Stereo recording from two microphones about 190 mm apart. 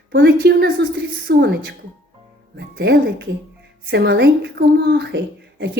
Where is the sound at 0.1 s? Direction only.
60° right (ahead or behind).